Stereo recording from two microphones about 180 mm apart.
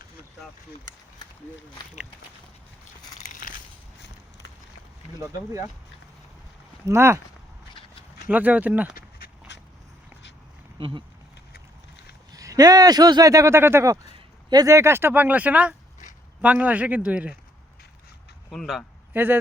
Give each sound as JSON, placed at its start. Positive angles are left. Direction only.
{"t": 6.8, "sound": "speech", "side_deg": -15}
{"t": 8.3, "sound": "speech", "side_deg": -10}
{"t": 9.0, "sound": "dog", "side_deg": 55}
{"t": 10.8, "sound": "speech", "side_deg": -30}
{"t": 12.3, "sound": "speech", "side_deg": -20}
{"t": 18.5, "sound": "a man's voice", "side_deg": 0}
{"t": 19.1, "sound": "speech", "side_deg": -10}